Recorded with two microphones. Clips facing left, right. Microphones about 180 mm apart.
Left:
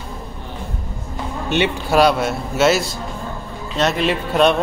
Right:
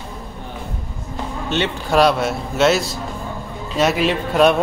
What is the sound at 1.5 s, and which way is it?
Speech, 15° left (ahead or behind).